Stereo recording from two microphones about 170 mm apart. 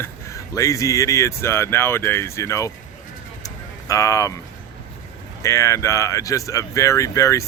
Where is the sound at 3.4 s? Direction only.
20° left (ahead or behind).